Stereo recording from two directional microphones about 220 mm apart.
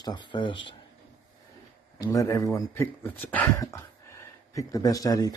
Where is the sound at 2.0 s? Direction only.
15° left (ahead or behind).